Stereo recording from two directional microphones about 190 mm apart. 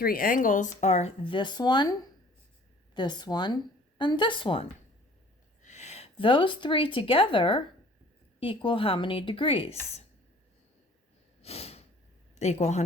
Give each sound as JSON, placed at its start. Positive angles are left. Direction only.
{"t": 0.0, "sound": "speech", "side_deg": 50}
{"t": 5.6, "sound": "speech", "side_deg": 35}
{"t": 11.4, "sound": "snort", "side_deg": 35}
{"t": 12.3, "sound": "speech", "side_deg": 35}